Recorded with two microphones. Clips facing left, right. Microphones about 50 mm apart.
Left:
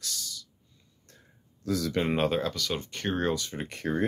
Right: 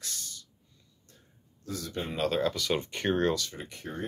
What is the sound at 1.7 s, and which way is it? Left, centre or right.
Speech, left.